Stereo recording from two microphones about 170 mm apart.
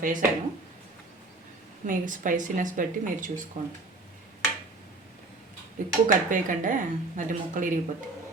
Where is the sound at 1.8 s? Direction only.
50° right (ahead or behind).